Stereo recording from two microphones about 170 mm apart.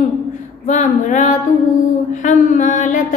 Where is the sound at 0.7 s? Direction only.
45° left (ahead or behind).